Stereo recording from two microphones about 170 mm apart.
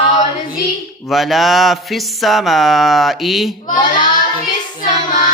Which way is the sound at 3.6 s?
50° left (ahead or behind).